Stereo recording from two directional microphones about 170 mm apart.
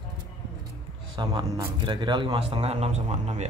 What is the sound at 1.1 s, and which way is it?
A man's voice, 20° right (ahead or behind).